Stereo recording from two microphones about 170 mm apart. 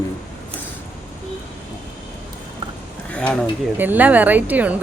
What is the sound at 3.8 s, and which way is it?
Speech, 10° right (ahead or behind).